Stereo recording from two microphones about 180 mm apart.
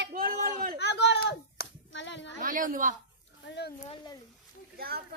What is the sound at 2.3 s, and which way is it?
Speech, 50° right (ahead or behind).